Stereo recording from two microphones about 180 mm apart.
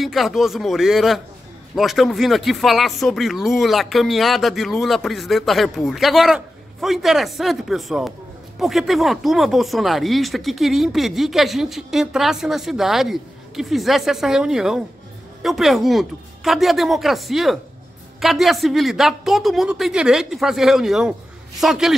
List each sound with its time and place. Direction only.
0.0 s speech: centre (ahead or behind)